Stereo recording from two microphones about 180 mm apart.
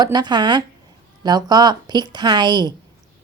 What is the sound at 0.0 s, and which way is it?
Speech, 25° right (ahead or behind).